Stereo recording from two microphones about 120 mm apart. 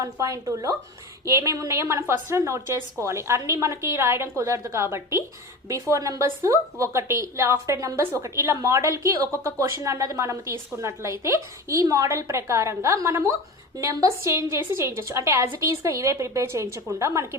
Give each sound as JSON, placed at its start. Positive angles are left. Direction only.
{"t": 0.0, "sound": "a woman's voice", "side_deg": -25}